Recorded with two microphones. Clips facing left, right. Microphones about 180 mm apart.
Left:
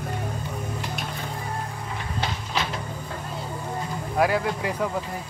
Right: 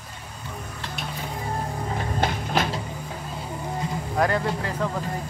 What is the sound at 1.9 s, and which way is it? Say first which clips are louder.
Music: right 4 dB; 50° right (ahead or behind).